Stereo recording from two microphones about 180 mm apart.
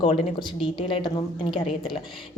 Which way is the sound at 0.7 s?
25° left (ahead or behind).